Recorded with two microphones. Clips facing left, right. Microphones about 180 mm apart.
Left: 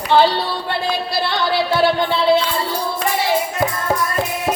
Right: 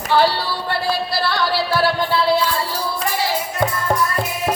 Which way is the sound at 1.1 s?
20° left (ahead or behind).